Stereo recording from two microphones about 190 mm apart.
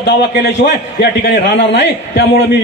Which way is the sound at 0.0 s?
65° left (ahead or behind).